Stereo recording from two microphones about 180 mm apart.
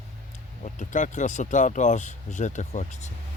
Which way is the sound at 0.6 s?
45° left (ahead or behind).